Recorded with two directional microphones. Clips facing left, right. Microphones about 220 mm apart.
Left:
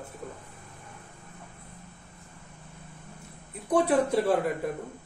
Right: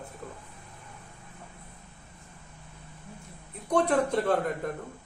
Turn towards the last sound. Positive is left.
turn(degrees=5)  # may be behind; listen again after turning